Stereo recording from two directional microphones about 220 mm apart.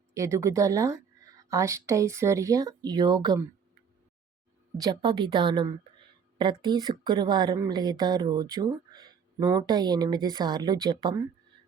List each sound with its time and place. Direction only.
0.1 s a woman's voice: 15° right (ahead or behind)
4.8 s a woman's voice: 20° right (ahead or behind)